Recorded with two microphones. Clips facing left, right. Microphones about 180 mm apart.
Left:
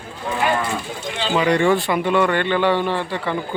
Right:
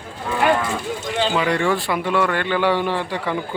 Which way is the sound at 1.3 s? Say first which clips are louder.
Left 6 dB; centre (ahead or behind).